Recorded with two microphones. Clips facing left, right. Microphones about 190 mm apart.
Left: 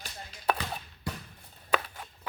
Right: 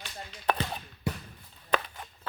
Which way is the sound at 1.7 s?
5° left (ahead or behind).